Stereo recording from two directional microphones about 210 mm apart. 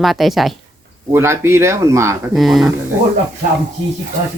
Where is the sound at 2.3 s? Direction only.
Centre (ahead or behind).